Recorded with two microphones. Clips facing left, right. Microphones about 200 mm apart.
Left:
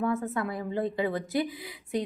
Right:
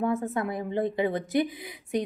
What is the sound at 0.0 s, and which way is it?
A woman's voice, 20° right (ahead or behind).